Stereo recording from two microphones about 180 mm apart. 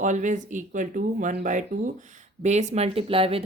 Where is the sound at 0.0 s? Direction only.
45° right (ahead or behind).